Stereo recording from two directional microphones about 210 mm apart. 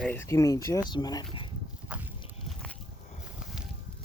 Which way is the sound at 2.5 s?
5° left (ahead or behind).